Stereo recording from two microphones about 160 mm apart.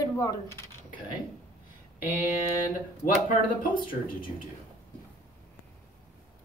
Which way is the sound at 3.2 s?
60° left (ahead or behind).